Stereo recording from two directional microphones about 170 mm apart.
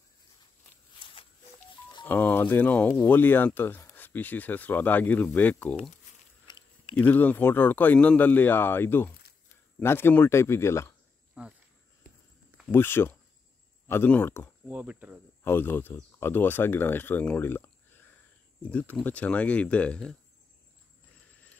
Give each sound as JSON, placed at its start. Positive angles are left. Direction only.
{"t": 0.9, "sound": "a sound", "side_deg": 30}
{"t": 2.0, "sound": "speech", "side_deg": 10}
{"t": 6.4, "sound": "biting", "side_deg": 25}
{"t": 7.0, "sound": "speech", "side_deg": 10}
{"t": 11.4, "sound": "speech", "side_deg": -5}
{"t": 12.7, "sound": "speech", "side_deg": 15}
{"t": 14.7, "sound": "speech", "side_deg": -10}
{"t": 15.4, "sound": "speech", "side_deg": 15}